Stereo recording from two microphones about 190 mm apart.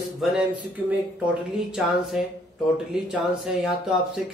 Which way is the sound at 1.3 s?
5° right (ahead or behind).